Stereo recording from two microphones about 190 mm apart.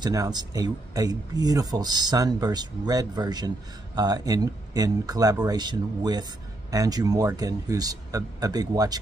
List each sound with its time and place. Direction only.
0.0 s speech: 20° right (ahead or behind)